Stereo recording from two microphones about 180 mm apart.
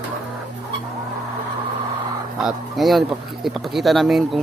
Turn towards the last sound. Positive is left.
turn(degrees=0)  # may be behind; listen again after turning